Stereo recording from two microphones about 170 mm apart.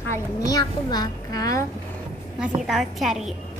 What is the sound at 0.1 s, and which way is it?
A woman's voice, 20° left (ahead or behind).